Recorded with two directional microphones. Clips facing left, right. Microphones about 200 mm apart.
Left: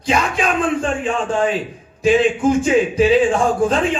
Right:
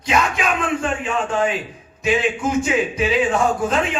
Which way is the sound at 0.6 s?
30° left (ahead or behind).